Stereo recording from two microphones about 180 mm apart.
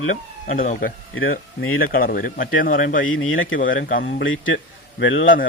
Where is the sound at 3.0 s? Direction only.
90° left.